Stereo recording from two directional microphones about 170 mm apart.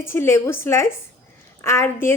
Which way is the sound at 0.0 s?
15° left (ahead or behind).